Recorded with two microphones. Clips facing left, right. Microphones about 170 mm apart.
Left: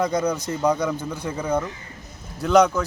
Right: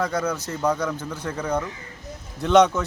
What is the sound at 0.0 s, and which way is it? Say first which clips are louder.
A man's voice: left 3 dB; 15° left (ahead or behind).